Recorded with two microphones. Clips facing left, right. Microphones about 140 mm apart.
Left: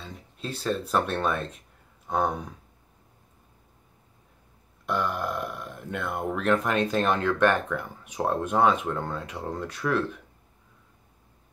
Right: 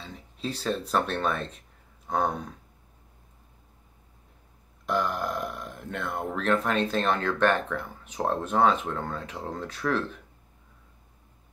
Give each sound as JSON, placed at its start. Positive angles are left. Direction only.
{"t": 0.4, "sound": "speech", "side_deg": 0}
{"t": 4.9, "sound": "speech", "side_deg": 5}